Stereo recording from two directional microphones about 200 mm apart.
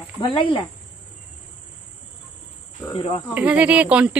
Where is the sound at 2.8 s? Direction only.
25° left (ahead or behind).